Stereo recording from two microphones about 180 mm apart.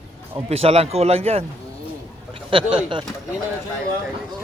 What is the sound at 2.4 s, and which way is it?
Speech, 30° right (ahead or behind).